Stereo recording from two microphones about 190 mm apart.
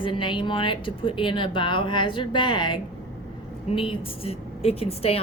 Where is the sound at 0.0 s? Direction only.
25° left (ahead or behind).